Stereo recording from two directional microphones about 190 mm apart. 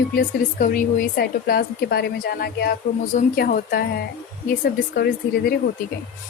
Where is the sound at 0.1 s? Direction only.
50° left (ahead or behind).